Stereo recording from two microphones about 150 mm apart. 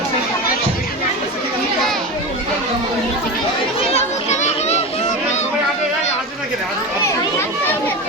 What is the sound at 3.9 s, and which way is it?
Children playing, 50° left (ahead or behind).